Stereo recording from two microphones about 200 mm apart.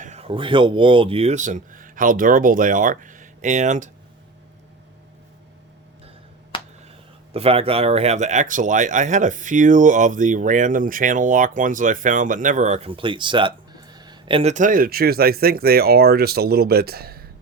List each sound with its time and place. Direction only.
0.0 s speech: 35° right (ahead or behind)
6.5 s finger snapping: 25° left (ahead or behind)
7.3 s speech: 30° right (ahead or behind)
14.5 s speech: 40° right (ahead or behind)